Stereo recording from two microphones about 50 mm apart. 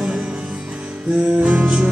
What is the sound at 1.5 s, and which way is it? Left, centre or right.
Music, right.